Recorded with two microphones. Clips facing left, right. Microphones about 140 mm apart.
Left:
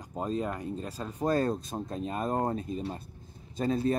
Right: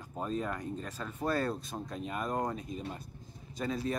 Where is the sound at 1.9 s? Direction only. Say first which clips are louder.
Left 4 dB; 30° left (ahead or behind).